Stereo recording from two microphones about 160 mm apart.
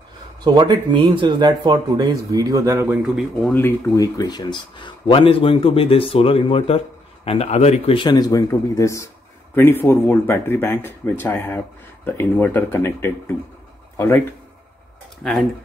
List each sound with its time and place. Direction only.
0.4 s speech: 25° right (ahead or behind)
3.5 s speech: 15° left (ahead or behind)